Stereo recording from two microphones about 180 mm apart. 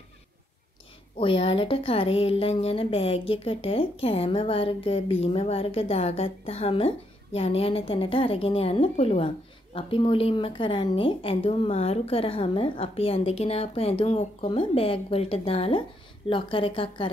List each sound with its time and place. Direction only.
1.2 s a woman's voice: 30° left (ahead or behind)